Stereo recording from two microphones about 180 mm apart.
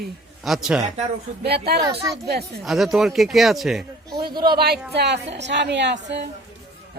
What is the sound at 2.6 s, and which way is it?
Speech, centre (ahead or behind).